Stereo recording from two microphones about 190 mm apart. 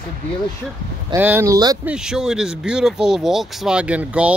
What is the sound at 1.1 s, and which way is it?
Speech, 10° right (ahead or behind).